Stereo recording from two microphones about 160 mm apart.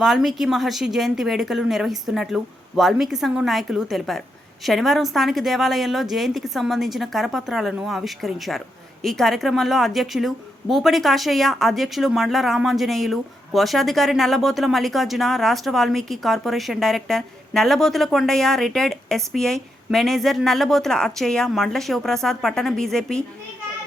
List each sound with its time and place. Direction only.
0.0 s speech: centre (ahead or behind)